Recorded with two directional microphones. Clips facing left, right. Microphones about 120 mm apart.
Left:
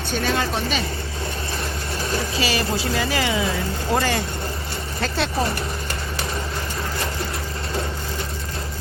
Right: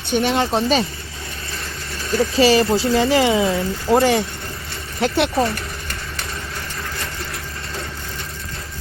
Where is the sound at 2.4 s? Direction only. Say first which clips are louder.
Right 11 dB; 30° right (ahead or behind).